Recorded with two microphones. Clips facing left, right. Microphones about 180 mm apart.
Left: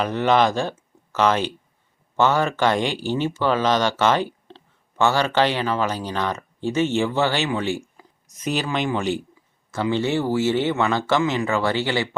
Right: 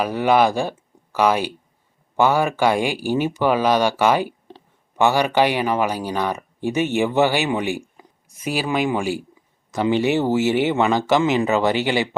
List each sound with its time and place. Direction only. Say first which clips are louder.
0.0 s speech: right 2 dB; 10° right (ahead or behind)